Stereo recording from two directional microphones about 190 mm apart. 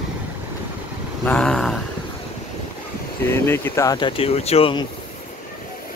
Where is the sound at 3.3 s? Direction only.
10° left (ahead or behind); by 4.8 s 30° left (ahead or behind).